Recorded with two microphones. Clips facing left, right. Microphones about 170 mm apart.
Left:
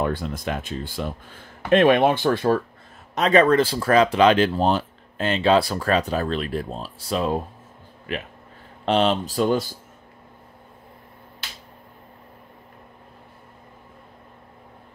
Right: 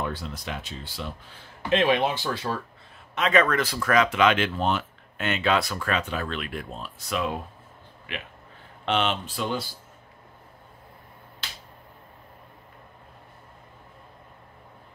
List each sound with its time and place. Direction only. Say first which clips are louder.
0.0 s a man's voice: left 7 dB; 50° left (ahead or behind)
3.2 s speech: left 6 dB; 35° left (ahead or behind)